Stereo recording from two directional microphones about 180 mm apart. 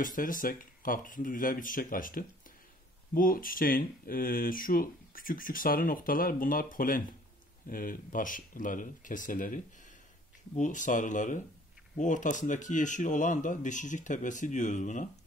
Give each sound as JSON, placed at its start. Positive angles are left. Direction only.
{"t": 0.0, "sound": "speech", "side_deg": 50}